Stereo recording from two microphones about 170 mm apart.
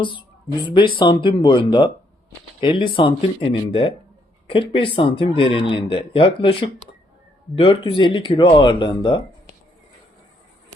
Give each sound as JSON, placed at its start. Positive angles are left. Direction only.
{"t": 0.0, "sound": "speech", "side_deg": 30}